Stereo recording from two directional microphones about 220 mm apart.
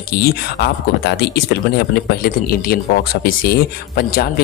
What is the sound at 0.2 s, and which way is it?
Speech, 45° left (ahead or behind).